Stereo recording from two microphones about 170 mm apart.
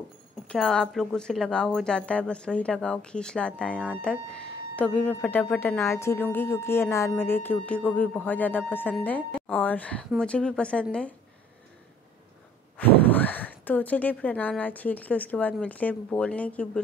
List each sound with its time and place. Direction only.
0.5 s speech: 5° left (ahead or behind)
12.7 s speech: 10° left (ahead or behind)